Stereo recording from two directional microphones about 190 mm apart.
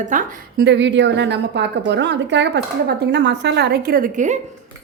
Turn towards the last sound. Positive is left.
turn(degrees=-45)  # may be behind; listen again after turning